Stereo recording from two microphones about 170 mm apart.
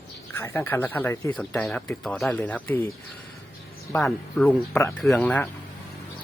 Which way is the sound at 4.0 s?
Centre (ahead or behind).